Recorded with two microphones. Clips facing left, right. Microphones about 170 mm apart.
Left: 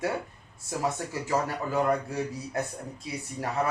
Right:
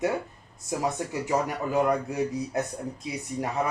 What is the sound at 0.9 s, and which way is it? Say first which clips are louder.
A man's voice: right 2 dB; 15° right (ahead or behind).